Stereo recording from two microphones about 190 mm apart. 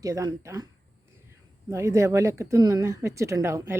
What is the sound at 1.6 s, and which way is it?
Speech, 15° right (ahead or behind).